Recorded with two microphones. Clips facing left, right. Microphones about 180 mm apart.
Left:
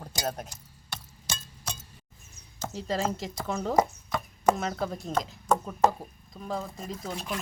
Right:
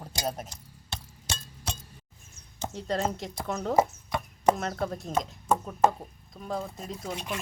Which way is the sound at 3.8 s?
25° right (ahead or behind).